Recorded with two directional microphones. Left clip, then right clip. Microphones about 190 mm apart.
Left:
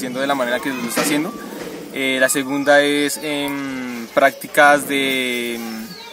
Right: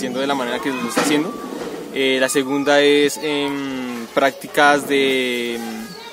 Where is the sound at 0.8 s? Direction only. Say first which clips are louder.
Right 3 dB; 50° right (ahead or behind).